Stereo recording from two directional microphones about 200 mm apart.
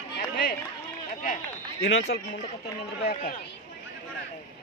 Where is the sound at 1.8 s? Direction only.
60° left (ahead or behind).